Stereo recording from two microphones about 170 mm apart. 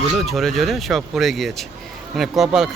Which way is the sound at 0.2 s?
Centre (ahead or behind).